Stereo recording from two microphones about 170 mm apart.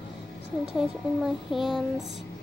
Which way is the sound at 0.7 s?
Centre (ahead or behind).